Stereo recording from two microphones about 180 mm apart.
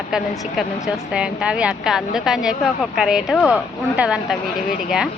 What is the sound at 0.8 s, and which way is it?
A woman's voice, 5° right (ahead or behind).